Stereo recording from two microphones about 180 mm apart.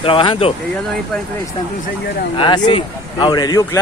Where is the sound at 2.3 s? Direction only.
25° left (ahead or behind).